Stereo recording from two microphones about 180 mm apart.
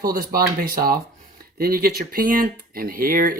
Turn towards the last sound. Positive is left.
turn(degrees=-50)  # may be behind; listen again after turning